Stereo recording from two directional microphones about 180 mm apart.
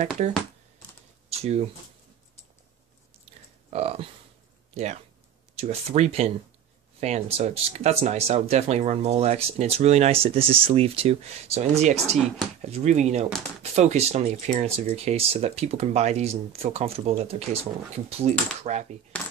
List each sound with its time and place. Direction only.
1.3 s speech: 35° right (ahead or behind)
3.7 s speech: 35° right (ahead or behind)